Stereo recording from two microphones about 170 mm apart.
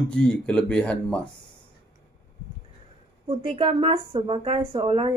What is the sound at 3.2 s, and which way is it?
Speech, 30° right (ahead or behind).